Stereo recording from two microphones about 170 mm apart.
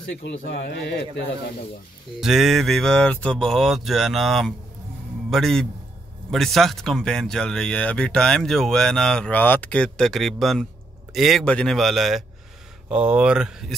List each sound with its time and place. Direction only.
0.1 s speech: 90° left
2.1 s speech: centre (ahead or behind)